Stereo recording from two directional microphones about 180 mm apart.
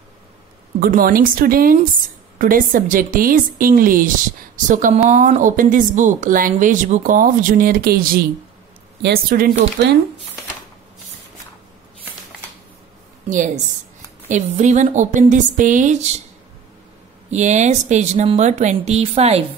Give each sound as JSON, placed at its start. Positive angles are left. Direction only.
{"t": 0.7, "sound": "a woman's voice", "side_deg": -50}
{"t": 14.3, "sound": "a woman's voice", "side_deg": -40}
{"t": 17.3, "sound": "speech", "side_deg": -40}